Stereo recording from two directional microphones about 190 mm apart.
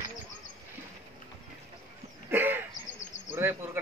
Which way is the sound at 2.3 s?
10° right (ahead or behind).